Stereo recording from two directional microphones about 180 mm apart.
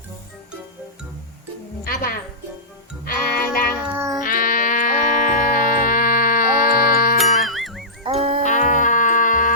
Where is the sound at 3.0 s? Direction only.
55° left (ahead or behind).